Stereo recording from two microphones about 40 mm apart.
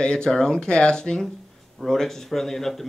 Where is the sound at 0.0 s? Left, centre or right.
Centre.